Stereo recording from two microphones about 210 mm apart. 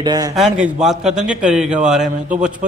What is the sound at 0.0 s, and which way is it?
Speech, 20° right (ahead or behind).